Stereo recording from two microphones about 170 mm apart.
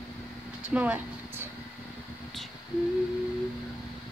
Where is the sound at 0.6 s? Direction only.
5° right (ahead or behind).